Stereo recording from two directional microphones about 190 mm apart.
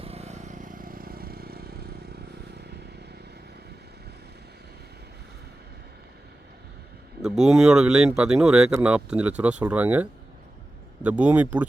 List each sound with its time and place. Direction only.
0.0 s vehicle: 35° right (ahead or behind); by 1.7 s 55° right (ahead or behind)
7.2 s speech: 5° right (ahead or behind)